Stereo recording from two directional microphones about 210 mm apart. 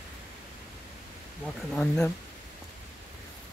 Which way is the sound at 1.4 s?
5° left (ahead or behind).